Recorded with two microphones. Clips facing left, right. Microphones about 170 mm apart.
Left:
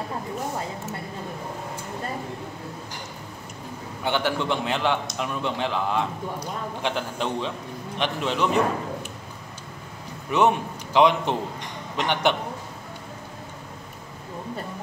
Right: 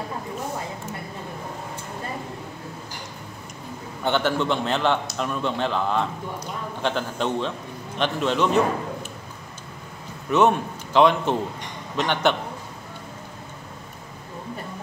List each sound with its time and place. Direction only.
4.0 s a man's voice: 10° left (ahead or behind)
10.3 s a man's voice: 15° left (ahead or behind)